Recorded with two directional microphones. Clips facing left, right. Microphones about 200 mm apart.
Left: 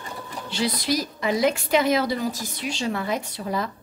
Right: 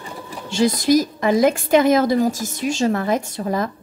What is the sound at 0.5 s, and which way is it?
A woman's voice, 45° right (ahead or behind).